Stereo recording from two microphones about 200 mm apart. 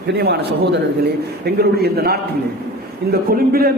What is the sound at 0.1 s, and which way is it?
A man's voice, 55° right (ahead or behind).